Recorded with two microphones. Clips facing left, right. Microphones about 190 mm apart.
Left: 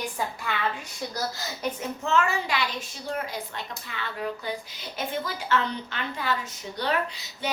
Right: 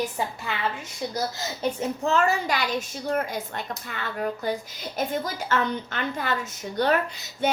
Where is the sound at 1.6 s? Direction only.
30° right (ahead or behind).